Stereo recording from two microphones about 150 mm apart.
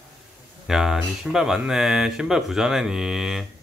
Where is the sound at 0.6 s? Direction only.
5° right (ahead or behind).